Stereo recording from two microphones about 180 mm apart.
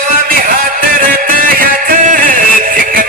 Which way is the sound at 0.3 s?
55° right (ahead or behind).